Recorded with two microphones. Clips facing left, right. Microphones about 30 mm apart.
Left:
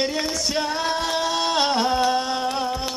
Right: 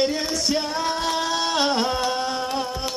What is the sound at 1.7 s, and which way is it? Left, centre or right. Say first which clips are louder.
Music: left 3 dB; centre.